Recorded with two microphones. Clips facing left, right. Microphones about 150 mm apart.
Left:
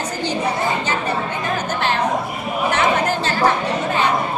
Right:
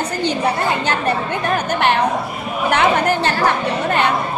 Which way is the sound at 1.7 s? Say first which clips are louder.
Right 3 dB; 65° right (ahead or behind).